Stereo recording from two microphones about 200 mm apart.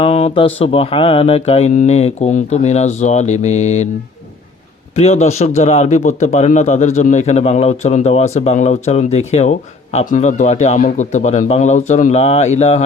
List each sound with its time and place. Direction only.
0.0 s speech: 30° left (ahead or behind)
4.9 s speech: 35° left (ahead or behind)